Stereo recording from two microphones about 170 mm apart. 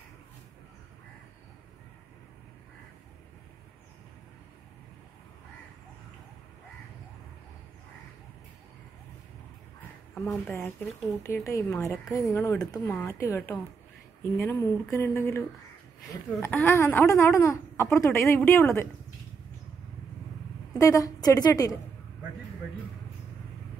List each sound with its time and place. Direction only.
10.1 s speech: centre (ahead or behind)
11.2 s speech: 20° left (ahead or behind)
20.7 s a woman's voice: 20° left (ahead or behind)